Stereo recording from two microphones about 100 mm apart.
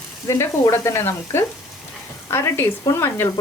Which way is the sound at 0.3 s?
30° left (ahead or behind).